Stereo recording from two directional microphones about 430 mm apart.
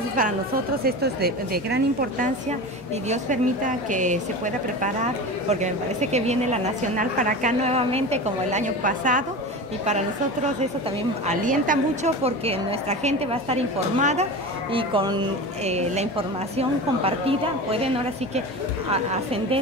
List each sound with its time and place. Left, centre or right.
0.8 s a woman's voice: right
11.2 s a woman's voice: centre
18.9 s a woman's voice: centre